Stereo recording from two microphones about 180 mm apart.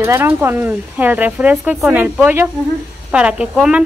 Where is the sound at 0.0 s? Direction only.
15° right (ahead or behind).